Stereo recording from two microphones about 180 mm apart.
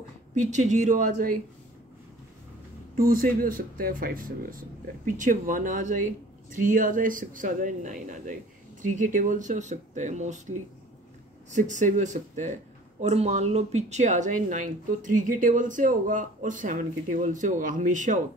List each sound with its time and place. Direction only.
0.5 s speech: 40° right (ahead or behind)
3.0 s speech: 50° right (ahead or behind)
11.5 s speech: 45° right (ahead or behind)